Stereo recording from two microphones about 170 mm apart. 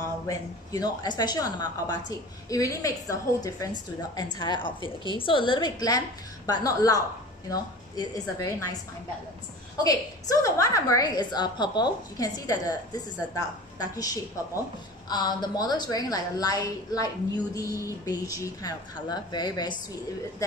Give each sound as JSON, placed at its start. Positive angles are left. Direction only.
{"t": 0.3, "sound": "a woman's voice", "side_deg": 20}
{"t": 9.8, "sound": "a woman's voice", "side_deg": 20}